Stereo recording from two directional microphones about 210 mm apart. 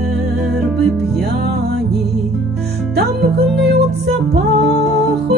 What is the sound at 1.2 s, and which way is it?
Music, 50° right (ahead or behind).